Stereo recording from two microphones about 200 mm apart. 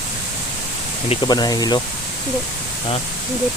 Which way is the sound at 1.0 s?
20° left (ahead or behind).